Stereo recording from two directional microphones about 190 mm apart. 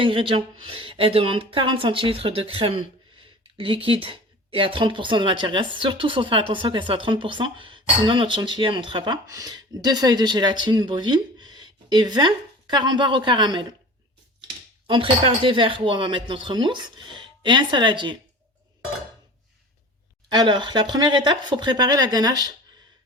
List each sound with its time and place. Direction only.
0.0 s speech: 25° right (ahead or behind)
20.3 s speech: 25° right (ahead or behind)